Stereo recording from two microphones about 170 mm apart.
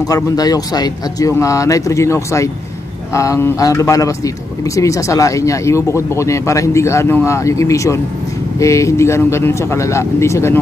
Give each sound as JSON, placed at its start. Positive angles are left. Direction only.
{"t": 0.1, "sound": "a man's voice", "side_deg": 20}